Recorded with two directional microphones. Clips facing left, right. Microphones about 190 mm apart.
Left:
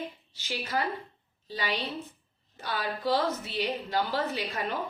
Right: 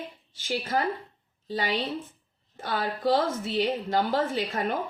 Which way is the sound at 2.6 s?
50° right (ahead or behind).